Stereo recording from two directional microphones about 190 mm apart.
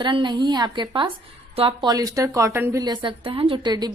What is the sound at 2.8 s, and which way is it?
A woman's voice, 25° right (ahead or behind).